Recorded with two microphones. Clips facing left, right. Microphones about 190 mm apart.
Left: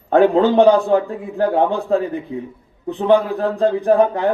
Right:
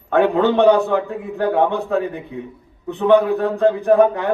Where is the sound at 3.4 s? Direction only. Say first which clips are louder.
Right 1 dB; 30° left (ahead or behind).